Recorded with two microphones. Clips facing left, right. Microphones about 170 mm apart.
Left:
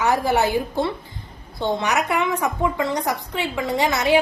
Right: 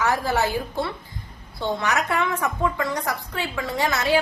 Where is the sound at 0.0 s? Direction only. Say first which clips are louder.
Left 3 dB; 20° left (ahead or behind).